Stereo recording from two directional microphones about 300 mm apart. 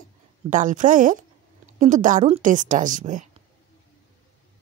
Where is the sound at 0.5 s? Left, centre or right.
Right.